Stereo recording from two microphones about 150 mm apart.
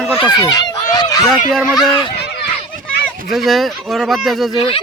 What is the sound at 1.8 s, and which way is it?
Speech, 30° left (ahead or behind).